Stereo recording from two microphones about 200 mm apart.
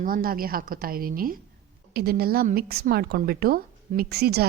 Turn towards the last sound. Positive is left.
turn(degrees=-50)  # may be behind; listen again after turning